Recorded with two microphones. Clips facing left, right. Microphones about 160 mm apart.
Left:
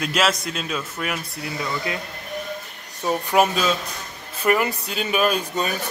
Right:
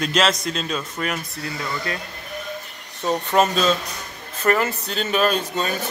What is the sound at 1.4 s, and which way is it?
Speech, 20° left (ahead or behind).